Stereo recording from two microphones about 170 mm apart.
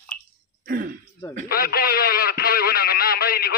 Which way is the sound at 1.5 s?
60° left (ahead or behind).